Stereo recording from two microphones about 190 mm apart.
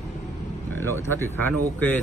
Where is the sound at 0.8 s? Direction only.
15° left (ahead or behind).